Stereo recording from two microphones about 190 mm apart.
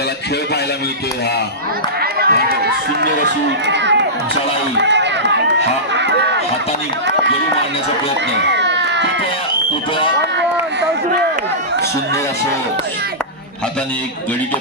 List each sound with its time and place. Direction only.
2.1 s speech: 55° right (ahead or behind)
4.7 s run: 65° right (ahead or behind)
8.4 s a sound: 65° right (ahead or behind)